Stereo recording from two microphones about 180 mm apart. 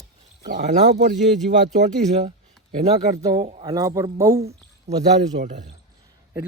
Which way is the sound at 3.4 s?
25° right (ahead or behind).